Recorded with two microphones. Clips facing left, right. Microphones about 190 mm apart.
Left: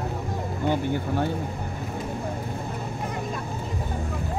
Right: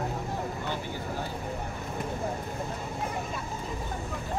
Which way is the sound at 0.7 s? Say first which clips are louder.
Left 9 dB; 60° left (ahead or behind).